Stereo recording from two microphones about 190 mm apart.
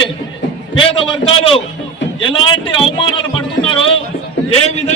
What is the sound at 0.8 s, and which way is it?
A man's voice, 30° left (ahead or behind).